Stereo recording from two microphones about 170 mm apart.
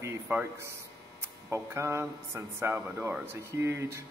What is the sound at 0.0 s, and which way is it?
Speech, 15° right (ahead or behind).